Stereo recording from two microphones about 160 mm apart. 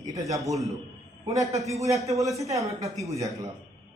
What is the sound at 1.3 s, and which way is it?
A man's voice, 20° right (ahead or behind).